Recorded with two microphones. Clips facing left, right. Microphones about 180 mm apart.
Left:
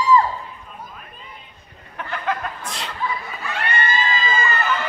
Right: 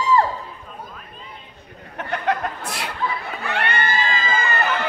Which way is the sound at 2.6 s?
10° right (ahead or behind).